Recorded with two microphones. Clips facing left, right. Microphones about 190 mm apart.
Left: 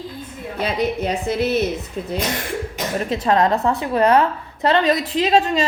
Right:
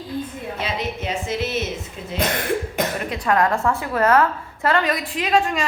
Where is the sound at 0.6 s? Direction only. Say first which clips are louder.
Left 7 dB; 35° left (ahead or behind).